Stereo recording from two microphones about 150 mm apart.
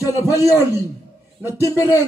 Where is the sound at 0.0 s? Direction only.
20° left (ahead or behind).